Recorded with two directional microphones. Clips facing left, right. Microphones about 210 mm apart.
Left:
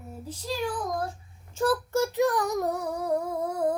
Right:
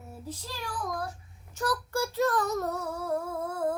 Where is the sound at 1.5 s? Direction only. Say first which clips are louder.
Left 6 dB; 25° left (ahead or behind).